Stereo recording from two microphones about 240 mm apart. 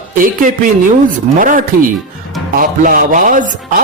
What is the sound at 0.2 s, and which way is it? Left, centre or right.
Speech, right.